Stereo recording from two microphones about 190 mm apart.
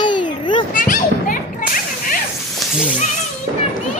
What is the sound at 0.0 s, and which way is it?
Children playing, 25° left (ahead or behind).